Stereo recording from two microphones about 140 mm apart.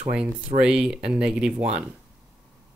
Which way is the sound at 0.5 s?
5° right (ahead or behind).